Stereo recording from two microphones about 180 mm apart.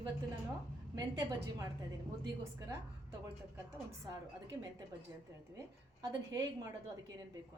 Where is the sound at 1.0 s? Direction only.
20° right (ahead or behind).